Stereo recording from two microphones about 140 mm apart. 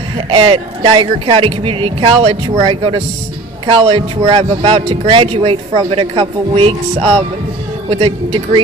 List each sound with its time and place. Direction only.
0.3 s a man's voice: 40° right (ahead or behind)